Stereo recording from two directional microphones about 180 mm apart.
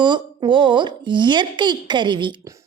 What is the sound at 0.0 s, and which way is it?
A woman's voice, 25° right (ahead or behind).